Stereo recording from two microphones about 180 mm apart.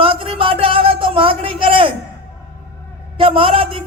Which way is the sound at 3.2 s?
30° right (ahead or behind).